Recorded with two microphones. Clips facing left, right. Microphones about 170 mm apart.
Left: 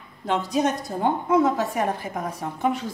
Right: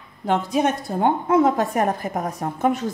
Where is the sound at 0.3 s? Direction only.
55° right (ahead or behind).